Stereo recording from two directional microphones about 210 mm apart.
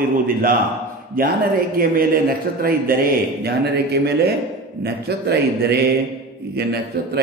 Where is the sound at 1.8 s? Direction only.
45° right (ahead or behind).